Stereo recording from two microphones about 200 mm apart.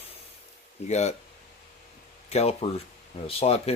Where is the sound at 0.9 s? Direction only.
35° left (ahead or behind).